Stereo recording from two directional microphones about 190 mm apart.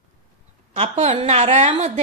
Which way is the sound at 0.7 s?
35° right (ahead or behind).